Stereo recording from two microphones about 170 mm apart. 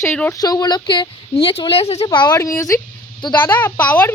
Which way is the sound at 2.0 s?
25° left (ahead or behind).